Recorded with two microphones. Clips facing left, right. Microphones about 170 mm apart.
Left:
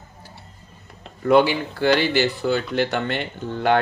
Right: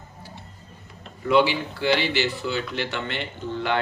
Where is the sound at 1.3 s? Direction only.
50° left (ahead or behind).